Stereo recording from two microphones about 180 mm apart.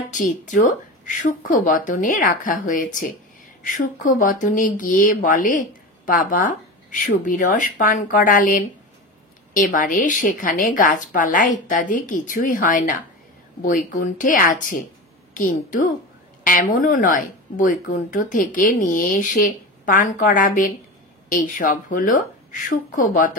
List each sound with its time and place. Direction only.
0.1 s speech: 45° left (ahead or behind)